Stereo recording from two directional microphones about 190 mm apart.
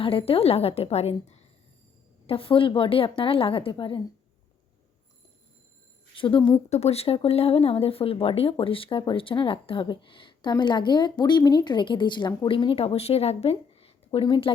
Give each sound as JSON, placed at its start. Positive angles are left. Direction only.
{"t": 0.0, "sound": "a woman's voice", "side_deg": 30}
{"t": 6.1, "sound": "a woman's voice", "side_deg": 25}